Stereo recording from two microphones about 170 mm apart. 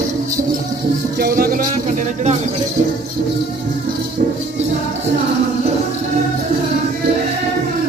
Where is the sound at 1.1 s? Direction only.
65° right (ahead or behind).